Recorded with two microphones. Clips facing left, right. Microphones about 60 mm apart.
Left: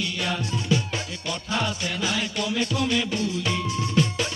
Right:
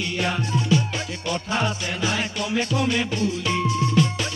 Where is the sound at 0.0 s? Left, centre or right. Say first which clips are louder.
Right 3 dB; right.